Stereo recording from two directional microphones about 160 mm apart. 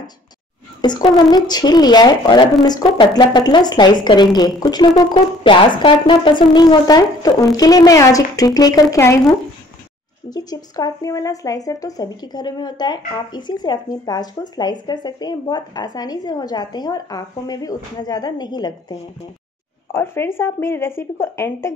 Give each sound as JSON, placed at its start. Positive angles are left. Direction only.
{"t": 0.7, "sound": "speech", "side_deg": 25}
{"t": 10.3, "sound": "speech", "side_deg": 25}
{"t": 19.9, "sound": "speech", "side_deg": 15}